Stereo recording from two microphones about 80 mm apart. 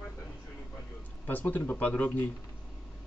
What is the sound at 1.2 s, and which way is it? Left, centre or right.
Speech, left.